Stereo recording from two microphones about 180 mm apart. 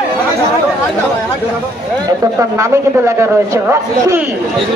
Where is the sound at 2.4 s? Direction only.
15° right (ahead or behind).